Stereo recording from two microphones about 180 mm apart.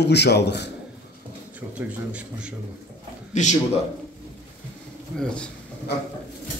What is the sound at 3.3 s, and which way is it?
Speech, 45° left (ahead or behind).